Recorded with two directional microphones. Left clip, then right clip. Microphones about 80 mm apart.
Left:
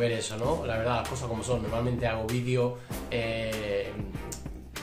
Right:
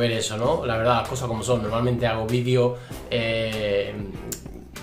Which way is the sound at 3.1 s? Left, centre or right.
Centre.